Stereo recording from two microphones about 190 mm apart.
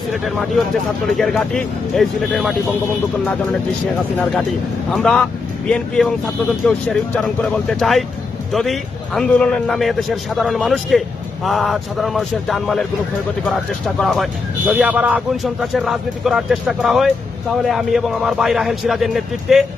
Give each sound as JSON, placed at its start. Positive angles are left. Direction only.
{"t": 1.1, "sound": "speech", "side_deg": 0}
{"t": 4.2, "sound": "speech", "side_deg": 5}